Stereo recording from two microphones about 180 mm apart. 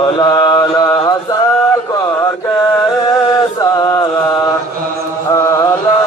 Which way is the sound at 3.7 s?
20° left (ahead or behind).